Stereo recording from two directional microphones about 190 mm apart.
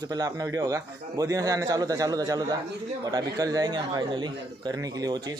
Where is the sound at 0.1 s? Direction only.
20° right (ahead or behind).